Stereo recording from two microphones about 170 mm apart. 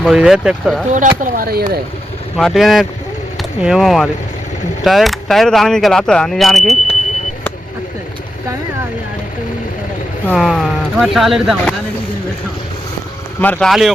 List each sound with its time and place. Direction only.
0.0 s speech: 5° right (ahead or behind)
0.9 s speech: 50° right (ahead or behind)
2.3 s speech: centre (ahead or behind)
10.2 s speech: centre (ahead or behind)
13.4 s speech: 5° left (ahead or behind)